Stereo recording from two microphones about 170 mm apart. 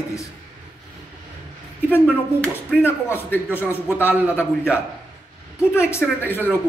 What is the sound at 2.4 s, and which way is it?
Speech, 10° left (ahead or behind).